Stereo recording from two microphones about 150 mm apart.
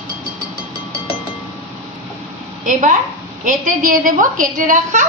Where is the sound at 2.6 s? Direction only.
60° right (ahead or behind).